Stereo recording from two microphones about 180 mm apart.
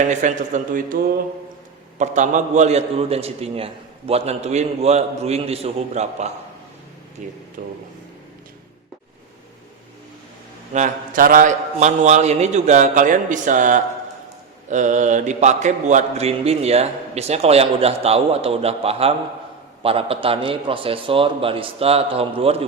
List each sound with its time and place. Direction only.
0.0 s a man's voice: 40° right (ahead or behind)
2.0 s mantra: 40° right (ahead or behind)
7.2 s a man's voice: 45° right (ahead or behind)
10.7 s a man's voice: 45° right (ahead or behind)
14.7 s mantra: 45° right (ahead or behind)